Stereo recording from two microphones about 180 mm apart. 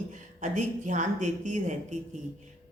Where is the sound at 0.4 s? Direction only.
45° right (ahead or behind).